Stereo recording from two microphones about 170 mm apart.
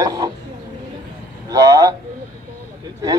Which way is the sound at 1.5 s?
20° right (ahead or behind).